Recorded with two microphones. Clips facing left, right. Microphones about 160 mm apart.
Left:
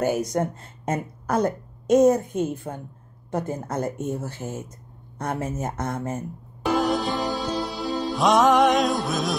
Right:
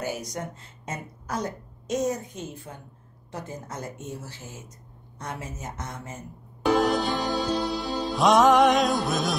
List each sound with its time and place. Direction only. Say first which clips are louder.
0.0 s speech: left 9 dB; 50° left (ahead or behind)
6.6 s music: even; centre (ahead or behind)